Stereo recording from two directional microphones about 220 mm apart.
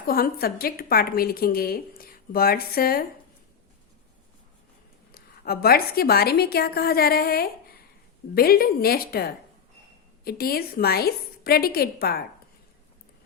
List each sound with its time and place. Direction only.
0.0 s a woman's voice: 40° left (ahead or behind)
5.1 s a woman's voice: 45° left (ahead or behind)